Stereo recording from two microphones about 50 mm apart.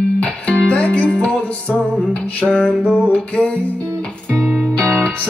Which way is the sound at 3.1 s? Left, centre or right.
Centre.